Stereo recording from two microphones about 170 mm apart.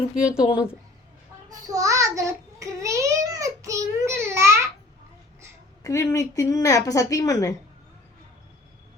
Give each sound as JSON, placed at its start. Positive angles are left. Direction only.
{"t": 0.1, "sound": "speech", "side_deg": -5}
{"t": 1.5, "sound": "child singing", "side_deg": -20}
{"t": 5.8, "sound": "a woman's voice", "side_deg": 15}